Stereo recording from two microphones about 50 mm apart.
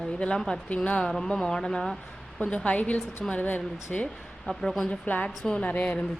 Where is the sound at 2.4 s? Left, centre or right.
Left.